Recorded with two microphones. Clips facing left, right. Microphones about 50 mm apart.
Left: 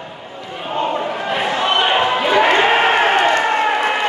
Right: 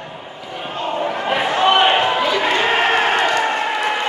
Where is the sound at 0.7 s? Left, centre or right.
Left.